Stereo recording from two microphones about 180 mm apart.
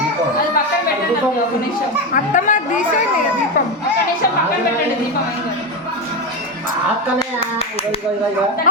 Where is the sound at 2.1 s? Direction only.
45° left (ahead or behind).